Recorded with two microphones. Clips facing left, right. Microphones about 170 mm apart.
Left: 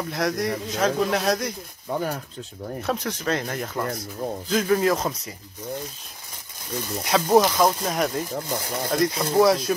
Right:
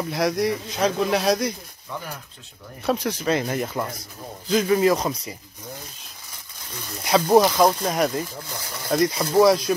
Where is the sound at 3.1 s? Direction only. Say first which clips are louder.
Right 3 dB; 5° right (ahead or behind).